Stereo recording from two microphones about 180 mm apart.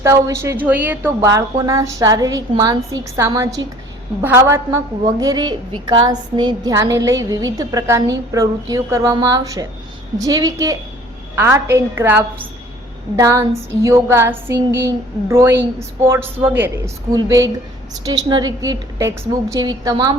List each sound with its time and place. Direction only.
0.0 s a woman's voice: 15° right (ahead or behind)